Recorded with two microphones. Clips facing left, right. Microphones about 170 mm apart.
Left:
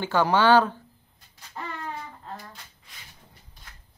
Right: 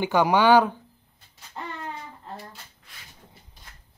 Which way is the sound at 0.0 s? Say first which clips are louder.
Right 2 dB; 15° right (ahead or behind).